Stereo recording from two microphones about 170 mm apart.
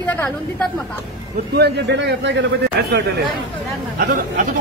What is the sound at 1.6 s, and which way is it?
Speech, 85° right.